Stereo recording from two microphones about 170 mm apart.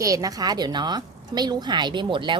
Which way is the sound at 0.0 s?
20° right (ahead or behind).